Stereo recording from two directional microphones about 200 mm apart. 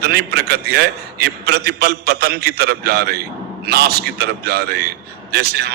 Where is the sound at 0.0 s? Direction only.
55° right (ahead or behind).